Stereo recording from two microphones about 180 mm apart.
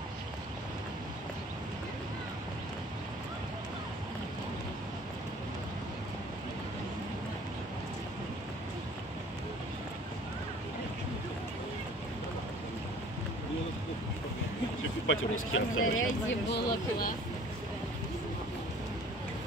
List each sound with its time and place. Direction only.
15.0 s speech: 90° left; by 17.1 s 70° left (ahead or behind)